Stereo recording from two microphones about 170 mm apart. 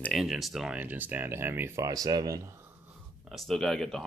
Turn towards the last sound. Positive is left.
turn(degrees=5)  # may be behind; listen again after turning